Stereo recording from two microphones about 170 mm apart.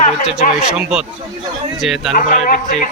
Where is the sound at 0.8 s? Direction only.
5° right (ahead or behind).